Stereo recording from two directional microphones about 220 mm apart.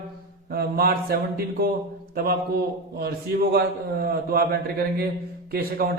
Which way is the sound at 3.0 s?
45° right (ahead or behind).